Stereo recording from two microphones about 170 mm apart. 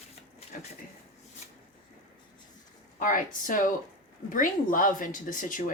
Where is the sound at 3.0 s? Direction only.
50° left (ahead or behind).